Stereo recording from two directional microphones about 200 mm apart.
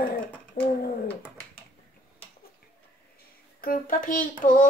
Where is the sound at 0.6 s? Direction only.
40° left (ahead or behind).